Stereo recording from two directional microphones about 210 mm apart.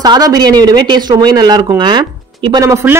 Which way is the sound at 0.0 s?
20° right (ahead or behind).